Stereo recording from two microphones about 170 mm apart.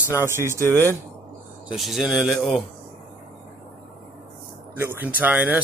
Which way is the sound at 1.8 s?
Centre (ahead or behind).